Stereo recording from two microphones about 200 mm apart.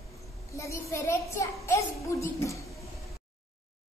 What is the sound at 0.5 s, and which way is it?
A child's voice, 15° left (ahead or behind).